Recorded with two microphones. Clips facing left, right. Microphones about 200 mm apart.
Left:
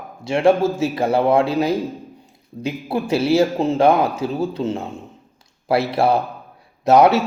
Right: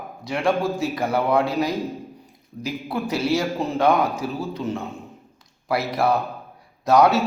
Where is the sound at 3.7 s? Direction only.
30° left (ahead or behind).